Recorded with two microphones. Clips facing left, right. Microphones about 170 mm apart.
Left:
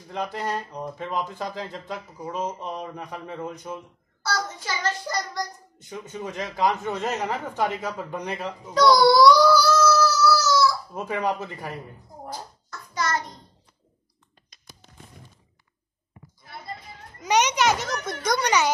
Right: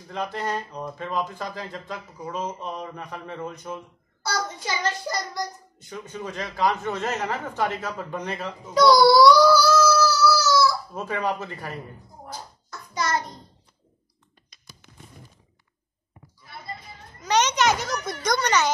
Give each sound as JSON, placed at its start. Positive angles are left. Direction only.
{"t": 0.1, "sound": "speech", "side_deg": 15}
{"t": 4.2, "sound": "child singing", "side_deg": -15}
{"t": 5.8, "sound": "speech", "side_deg": 20}
{"t": 8.7, "sound": "child singing", "side_deg": -5}
{"t": 11.0, "sound": "speech", "side_deg": 15}
{"t": 12.6, "sound": "a sound", "side_deg": -15}
{"t": 17.2, "sound": "a sound", "side_deg": 15}